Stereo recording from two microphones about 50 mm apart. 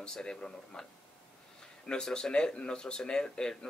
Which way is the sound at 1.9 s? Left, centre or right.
Centre.